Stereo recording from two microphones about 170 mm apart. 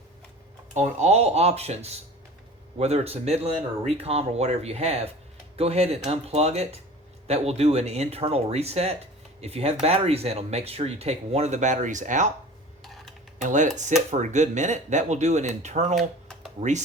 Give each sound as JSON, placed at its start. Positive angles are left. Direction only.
{"t": 0.7, "sound": "speech", "side_deg": -45}
{"t": 12.8, "sound": "tick-tock", "side_deg": 0}
{"t": 13.4, "sound": "speech", "side_deg": -45}
{"t": 16.0, "sound": "a sound", "side_deg": 0}
{"t": 16.6, "sound": "speech", "side_deg": -45}